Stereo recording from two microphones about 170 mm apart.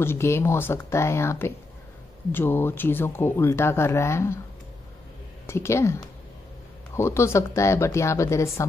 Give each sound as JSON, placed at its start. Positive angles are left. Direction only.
{"t": 0.0, "sound": "speech", "side_deg": 15}
{"t": 5.5, "sound": "speech", "side_deg": 15}
{"t": 7.0, "sound": "speech", "side_deg": 15}